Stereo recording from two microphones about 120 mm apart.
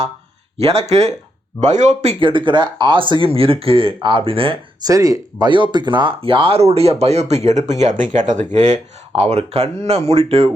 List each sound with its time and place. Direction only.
0.6 s speech: 60° right (ahead or behind)
1.6 s speech: 90° right
2.1 s speech: 45° right (ahead or behind)
4.8 s speech: 30° right (ahead or behind)
5.5 s speech: 45° right (ahead or behind); by 8.4 s 90° right
8.5 s speech: 75° right (ahead or behind); by 10.5 s 55° right (ahead or behind)